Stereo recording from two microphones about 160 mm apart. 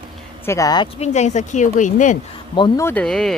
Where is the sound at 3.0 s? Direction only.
Centre (ahead or behind).